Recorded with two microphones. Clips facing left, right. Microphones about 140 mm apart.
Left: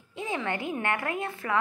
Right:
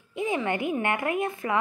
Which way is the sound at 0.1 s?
15° right (ahead or behind).